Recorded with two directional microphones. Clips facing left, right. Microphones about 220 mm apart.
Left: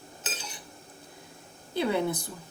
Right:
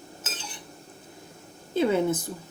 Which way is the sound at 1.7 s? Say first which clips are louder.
Right 4 dB; 20° right (ahead or behind).